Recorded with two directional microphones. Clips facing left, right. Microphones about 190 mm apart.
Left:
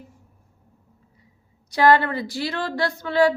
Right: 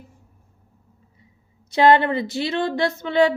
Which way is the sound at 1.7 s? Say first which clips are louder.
Right 2 dB; 25° right (ahead or behind).